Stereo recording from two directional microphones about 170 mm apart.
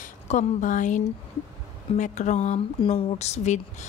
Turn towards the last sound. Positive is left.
turn(degrees=40)  # may be behind; listen again after turning